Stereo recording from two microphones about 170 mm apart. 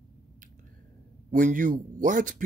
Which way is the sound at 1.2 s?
50° right (ahead or behind).